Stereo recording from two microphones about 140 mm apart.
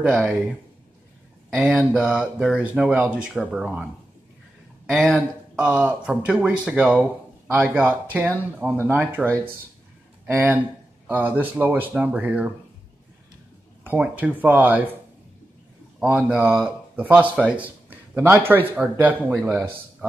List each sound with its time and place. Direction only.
0.1 s speech: centre (ahead or behind)
13.8 s speech: 10° right (ahead or behind)
16.0 s speech: 5° right (ahead or behind)